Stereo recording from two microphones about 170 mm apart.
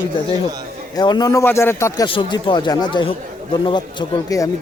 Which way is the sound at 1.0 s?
25° left (ahead or behind).